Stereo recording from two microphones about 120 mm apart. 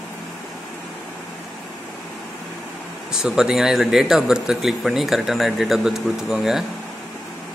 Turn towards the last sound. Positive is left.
turn(degrees=-5)  # may be behind; listen again after turning